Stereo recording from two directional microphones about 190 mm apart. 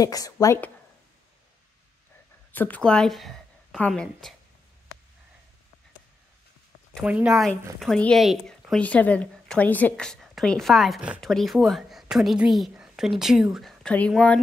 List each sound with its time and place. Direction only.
0.0 s a woman's voice: 20° left (ahead or behind)
2.5 s a woman's voice: 10° left (ahead or behind)
6.9 s a woman's voice: centre (ahead or behind)